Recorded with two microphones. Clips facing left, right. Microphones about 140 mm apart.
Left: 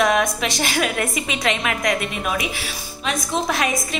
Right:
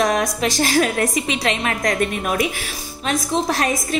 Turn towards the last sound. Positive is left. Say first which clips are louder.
# right 2 dB
turn(degrees=-40)  # may be behind; listen again after turning